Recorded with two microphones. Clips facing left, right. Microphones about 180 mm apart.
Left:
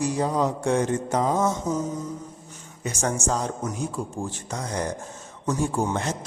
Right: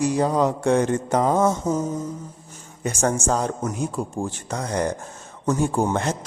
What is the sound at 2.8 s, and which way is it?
Speech, 55° right (ahead or behind).